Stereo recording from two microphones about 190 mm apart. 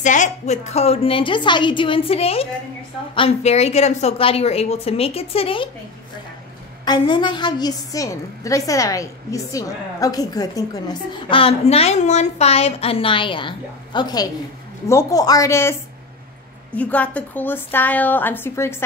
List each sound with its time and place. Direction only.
0.0 s a woman's voice: 40° left (ahead or behind)
6.8 s a woman's voice: 20° left (ahead or behind)
16.7 s a woman's voice: 5° left (ahead or behind)